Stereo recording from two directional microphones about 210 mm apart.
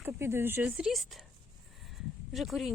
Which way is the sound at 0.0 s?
10° right (ahead or behind).